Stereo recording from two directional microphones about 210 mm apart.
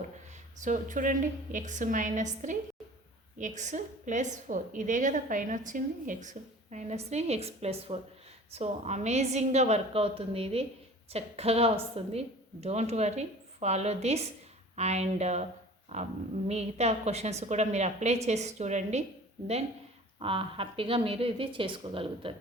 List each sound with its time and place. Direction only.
0.6 s a woman's voice: 35° right (ahead or behind)
20.1 s a woman's voice: 25° right (ahead or behind)